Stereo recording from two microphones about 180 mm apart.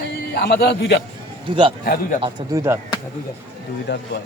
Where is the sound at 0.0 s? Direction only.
65° left (ahead or behind).